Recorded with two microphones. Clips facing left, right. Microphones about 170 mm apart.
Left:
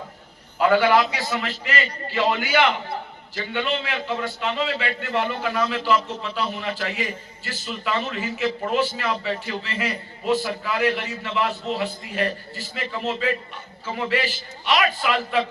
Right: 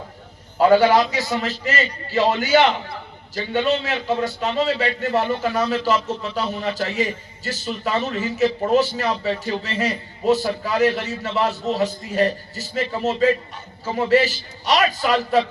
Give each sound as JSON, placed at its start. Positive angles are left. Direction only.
{"t": 0.6, "sound": "a man's voice", "side_deg": -40}